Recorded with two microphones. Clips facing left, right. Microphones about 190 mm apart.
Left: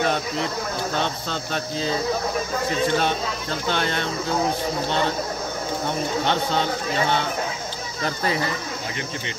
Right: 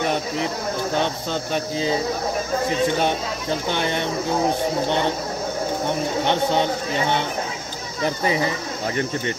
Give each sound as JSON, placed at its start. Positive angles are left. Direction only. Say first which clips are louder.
{"t": 0.9, "sound": "speech", "louder": "right 3 dB", "side_deg": -15}
{"t": 3.0, "sound": "speech", "louder": "right 2 dB", "side_deg": -15}
{"t": 6.2, "sound": "speech", "louder": "right 5 dB", "side_deg": -15}